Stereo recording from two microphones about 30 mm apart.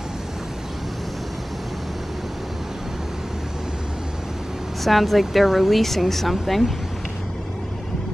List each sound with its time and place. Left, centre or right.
4.8 s speech: centre
5.8 s speech: centre